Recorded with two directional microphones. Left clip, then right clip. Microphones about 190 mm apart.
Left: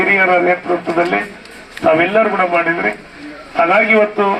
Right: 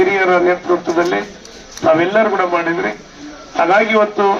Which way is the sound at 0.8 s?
40° left (ahead or behind).